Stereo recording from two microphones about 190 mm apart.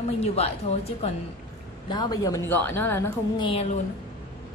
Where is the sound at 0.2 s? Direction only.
35° left (ahead or behind).